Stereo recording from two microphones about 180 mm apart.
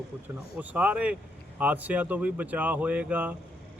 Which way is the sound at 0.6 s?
10° right (ahead or behind).